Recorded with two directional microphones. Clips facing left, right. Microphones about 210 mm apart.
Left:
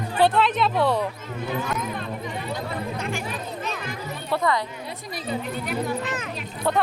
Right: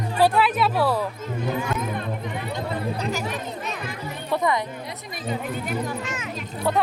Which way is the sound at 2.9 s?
35° right (ahead or behind).